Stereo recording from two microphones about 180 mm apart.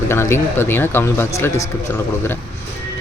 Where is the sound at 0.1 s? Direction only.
15° left (ahead or behind).